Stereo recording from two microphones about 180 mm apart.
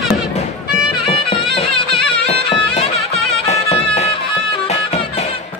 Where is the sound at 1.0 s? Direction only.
30° left (ahead or behind).